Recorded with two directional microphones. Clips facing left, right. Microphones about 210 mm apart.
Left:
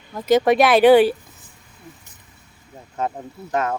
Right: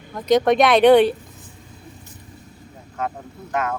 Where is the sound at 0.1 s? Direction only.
5° left (ahead or behind).